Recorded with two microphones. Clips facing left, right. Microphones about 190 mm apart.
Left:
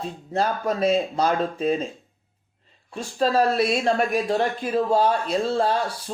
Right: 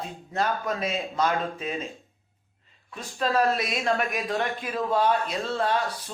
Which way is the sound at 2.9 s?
30° left (ahead or behind).